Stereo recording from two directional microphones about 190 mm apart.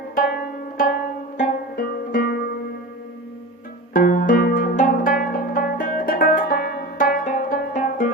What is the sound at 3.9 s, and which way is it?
Music, 45° left (ahead or behind).